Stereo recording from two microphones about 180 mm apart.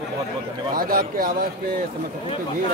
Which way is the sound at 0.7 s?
55° right (ahead or behind).